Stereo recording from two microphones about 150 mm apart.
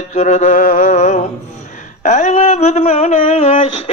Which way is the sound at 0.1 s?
55° left (ahead or behind).